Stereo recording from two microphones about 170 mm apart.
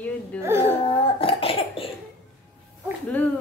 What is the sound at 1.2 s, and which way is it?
Cough, 35° left (ahead or behind).